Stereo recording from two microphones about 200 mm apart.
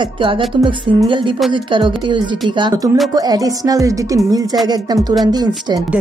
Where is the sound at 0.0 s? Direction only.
25° right (ahead or behind).